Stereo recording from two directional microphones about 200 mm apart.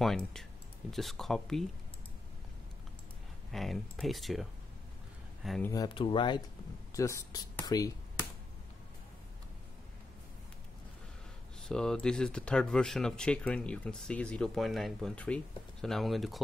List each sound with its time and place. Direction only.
0.9 s speech: centre (ahead or behind)
3.5 s speech: centre (ahead or behind)
5.7 s speech: 20° left (ahead or behind)
11.6 s speech: 5° left (ahead or behind)